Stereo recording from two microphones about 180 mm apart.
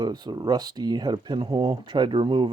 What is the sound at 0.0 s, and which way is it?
Speech, 25° right (ahead or behind).